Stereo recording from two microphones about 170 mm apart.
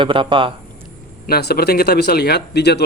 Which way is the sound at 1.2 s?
65° left (ahead or behind).